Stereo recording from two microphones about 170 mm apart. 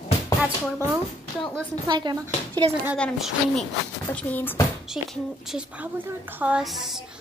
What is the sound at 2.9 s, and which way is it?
A woman's voice, 5° left (ahead or behind).